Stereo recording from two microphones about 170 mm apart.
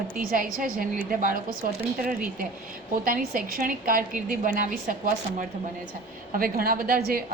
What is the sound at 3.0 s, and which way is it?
A woman's voice, 55° right (ahead or behind).